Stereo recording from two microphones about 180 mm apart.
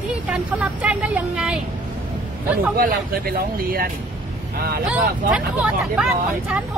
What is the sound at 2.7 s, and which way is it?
Speech, 55° right (ahead or behind).